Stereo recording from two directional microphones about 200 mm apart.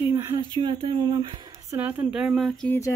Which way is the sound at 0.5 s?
25° right (ahead or behind).